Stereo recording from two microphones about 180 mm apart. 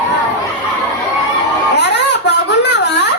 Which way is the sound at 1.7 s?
70° left (ahead or behind).